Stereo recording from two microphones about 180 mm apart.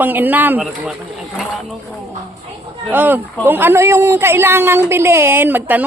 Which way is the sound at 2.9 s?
10° right (ahead or behind).